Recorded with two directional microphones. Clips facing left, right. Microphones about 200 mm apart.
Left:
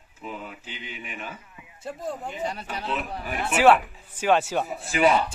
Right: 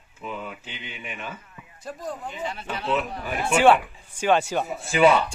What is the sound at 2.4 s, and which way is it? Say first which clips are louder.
Speech: even; 40° left (ahead or behind).